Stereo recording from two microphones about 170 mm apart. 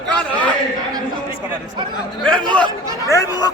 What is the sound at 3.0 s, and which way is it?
Speech, 20° left (ahead or behind).